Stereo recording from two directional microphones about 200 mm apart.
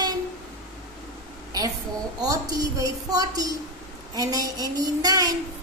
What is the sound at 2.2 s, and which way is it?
A woman's voice, 15° right (ahead or behind).